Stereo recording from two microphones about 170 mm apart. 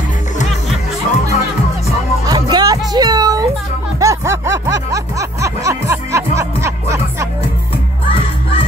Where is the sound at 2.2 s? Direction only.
25° right (ahead or behind).